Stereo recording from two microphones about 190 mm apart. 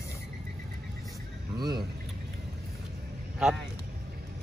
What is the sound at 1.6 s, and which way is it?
Speech, 25° right (ahead or behind).